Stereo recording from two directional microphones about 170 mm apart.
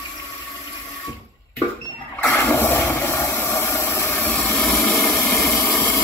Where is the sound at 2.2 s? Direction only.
15° left (ahead or behind).